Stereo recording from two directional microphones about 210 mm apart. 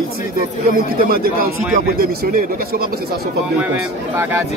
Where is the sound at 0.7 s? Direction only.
45° right (ahead or behind).